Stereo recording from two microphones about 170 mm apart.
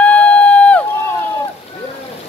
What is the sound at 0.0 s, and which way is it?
Crowd, 5° left (ahead or behind).